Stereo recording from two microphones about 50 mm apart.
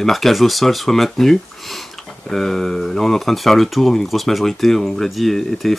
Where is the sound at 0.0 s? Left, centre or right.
Centre.